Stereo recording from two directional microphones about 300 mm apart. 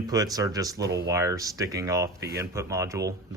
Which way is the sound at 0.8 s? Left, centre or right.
Right.